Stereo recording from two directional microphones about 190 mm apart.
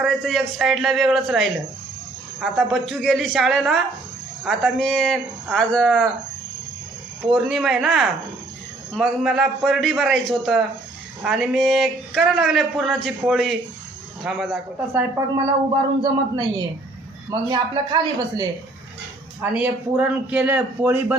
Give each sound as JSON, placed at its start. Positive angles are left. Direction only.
{"t": 0.0, "sound": "a man's voice", "side_deg": 0}
{"t": 7.3, "sound": "a man's voice", "side_deg": -5}
{"t": 16.0, "sound": "speech", "side_deg": -20}
{"t": 19.4, "sound": "a man's voice", "side_deg": -10}